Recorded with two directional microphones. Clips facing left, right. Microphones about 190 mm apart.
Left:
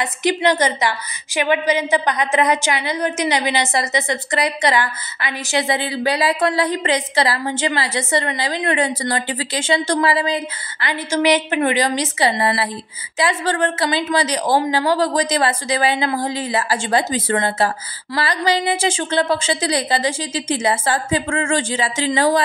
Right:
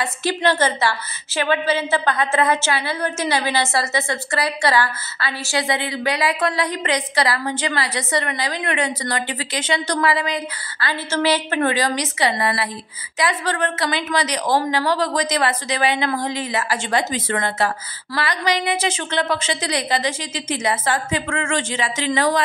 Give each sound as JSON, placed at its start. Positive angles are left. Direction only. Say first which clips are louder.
{"t": 0.0, "sound": "a woman's voice", "louder": "left 3 dB", "side_deg": 15}
{"t": 10.9, "sound": "a woman's voice", "louder": "left 3 dB", "side_deg": 15}